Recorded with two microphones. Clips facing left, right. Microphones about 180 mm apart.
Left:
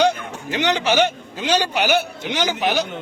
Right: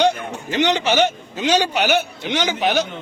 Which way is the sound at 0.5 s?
10° left (ahead or behind).